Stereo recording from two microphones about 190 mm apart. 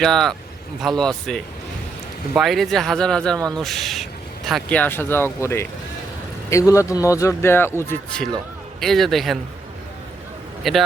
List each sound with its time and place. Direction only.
0.0 s speech: centre (ahead or behind)
3.3 s speech: 20° right (ahead or behind)
3.6 s speech: centre (ahead or behind)
10.6 s a man's voice: centre (ahead or behind)